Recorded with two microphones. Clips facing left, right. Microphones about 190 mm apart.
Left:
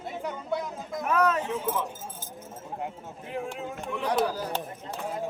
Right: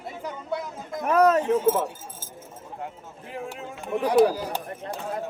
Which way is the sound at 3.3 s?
Centre (ahead or behind).